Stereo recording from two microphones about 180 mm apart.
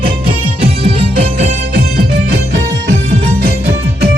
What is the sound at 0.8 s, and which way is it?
Music, 30° right (ahead or behind).